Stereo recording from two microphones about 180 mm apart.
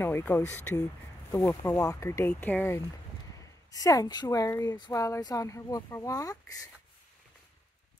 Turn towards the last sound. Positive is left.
turn(degrees=20)  # may be behind; listen again after turning